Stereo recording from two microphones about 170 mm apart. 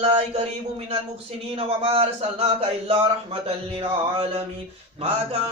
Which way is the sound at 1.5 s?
35° right (ahead or behind).